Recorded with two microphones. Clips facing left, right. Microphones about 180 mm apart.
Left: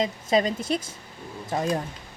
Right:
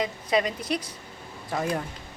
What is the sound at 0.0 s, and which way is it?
Speech, 25° left (ahead or behind).